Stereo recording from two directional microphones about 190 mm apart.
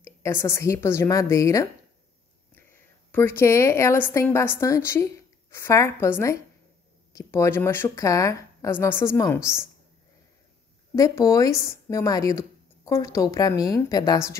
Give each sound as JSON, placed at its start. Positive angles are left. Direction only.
{"t": 0.0, "sound": "a woman's voice", "side_deg": 15}
{"t": 11.0, "sound": "speech", "side_deg": 15}